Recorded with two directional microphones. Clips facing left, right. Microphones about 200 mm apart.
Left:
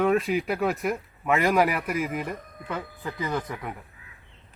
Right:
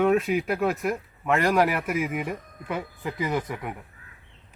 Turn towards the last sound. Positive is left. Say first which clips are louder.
# right 2 dB
turn(degrees=-10)  # may be behind; listen again after turning